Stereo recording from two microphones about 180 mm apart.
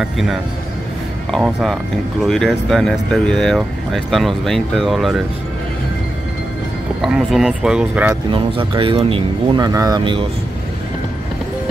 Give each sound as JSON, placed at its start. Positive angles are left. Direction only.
{"t": 0.0, "sound": "speech", "side_deg": 0}
{"t": 7.0, "sound": "speech", "side_deg": 0}
{"t": 8.3, "sound": "speech", "side_deg": -30}